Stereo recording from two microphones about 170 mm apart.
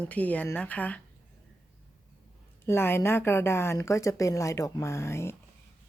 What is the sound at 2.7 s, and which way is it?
A woman's voice, 15° left (ahead or behind).